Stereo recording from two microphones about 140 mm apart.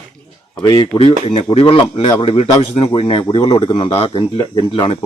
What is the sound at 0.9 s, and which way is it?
Speech, 45° left (ahead or behind).